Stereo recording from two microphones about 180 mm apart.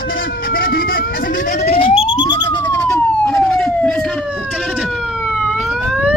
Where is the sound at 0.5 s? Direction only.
55° left (ahead or behind); by 2.6 s 25° left (ahead or behind).